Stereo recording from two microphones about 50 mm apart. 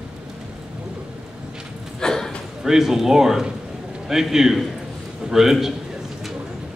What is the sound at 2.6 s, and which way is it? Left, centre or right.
A man's voice, centre.